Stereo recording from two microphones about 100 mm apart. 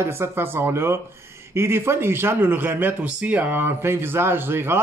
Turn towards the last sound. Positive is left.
turn(degrees=-20)  # may be behind; listen again after turning